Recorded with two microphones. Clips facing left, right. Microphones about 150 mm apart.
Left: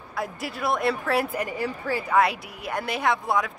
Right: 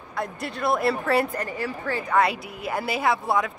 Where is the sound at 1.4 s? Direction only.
10° left (ahead or behind).